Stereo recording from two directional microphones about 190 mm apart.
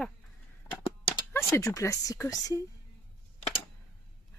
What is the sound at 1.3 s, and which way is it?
Speech, 15° left (ahead or behind).